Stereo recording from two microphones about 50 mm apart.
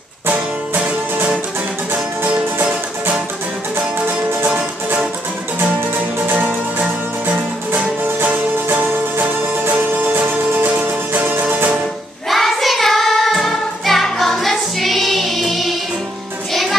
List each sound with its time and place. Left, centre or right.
2.3 s music: right
6.4 s music: right
8.2 s music: right
12.3 s music: centre